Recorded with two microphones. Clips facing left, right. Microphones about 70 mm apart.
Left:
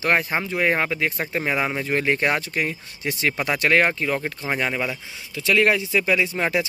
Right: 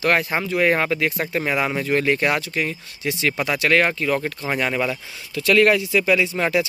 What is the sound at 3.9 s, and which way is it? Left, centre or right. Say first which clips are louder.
Speech: right 2 dB; centre.